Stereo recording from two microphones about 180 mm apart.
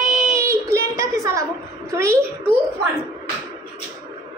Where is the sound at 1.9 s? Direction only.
15° right (ahead or behind).